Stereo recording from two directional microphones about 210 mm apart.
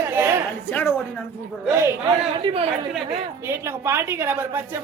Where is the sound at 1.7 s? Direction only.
15° right (ahead or behind).